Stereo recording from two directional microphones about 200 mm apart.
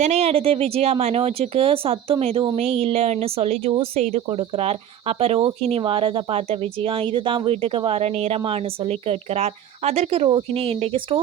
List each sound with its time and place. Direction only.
0.0 s speech: 30° right (ahead or behind)